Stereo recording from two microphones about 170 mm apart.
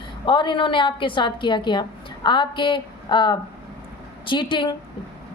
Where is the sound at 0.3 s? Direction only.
30° left (ahead or behind).